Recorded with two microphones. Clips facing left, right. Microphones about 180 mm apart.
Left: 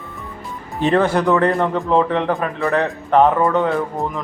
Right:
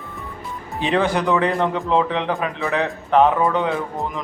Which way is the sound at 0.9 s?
10° right (ahead or behind).